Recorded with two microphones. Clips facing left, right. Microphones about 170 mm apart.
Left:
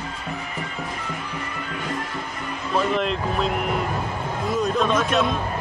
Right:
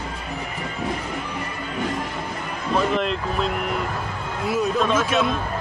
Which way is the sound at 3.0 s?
Centre (ahead or behind).